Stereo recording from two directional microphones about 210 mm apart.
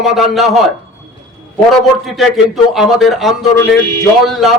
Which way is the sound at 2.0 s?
Centre (ahead or behind).